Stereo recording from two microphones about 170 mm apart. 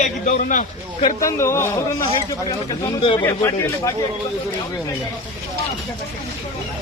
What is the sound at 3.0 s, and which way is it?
Speech, 30° left (ahead or behind).